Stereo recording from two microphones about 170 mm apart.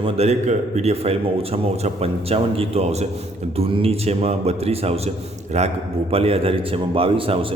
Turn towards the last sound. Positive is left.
turn(degrees=-30)  # may be behind; listen again after turning